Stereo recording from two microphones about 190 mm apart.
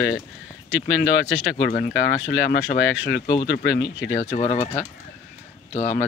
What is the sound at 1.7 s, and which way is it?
Speech, 40° left (ahead or behind).